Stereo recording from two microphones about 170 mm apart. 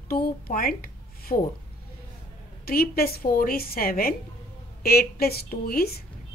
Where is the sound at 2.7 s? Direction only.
60° left (ahead or behind).